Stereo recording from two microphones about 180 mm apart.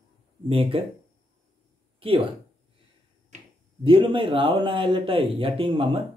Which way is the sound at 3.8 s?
30° right (ahead or behind).